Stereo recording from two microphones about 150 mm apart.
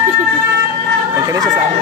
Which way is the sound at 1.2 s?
25° right (ahead or behind).